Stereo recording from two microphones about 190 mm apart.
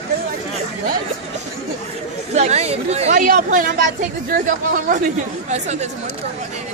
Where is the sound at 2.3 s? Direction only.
35° right (ahead or behind).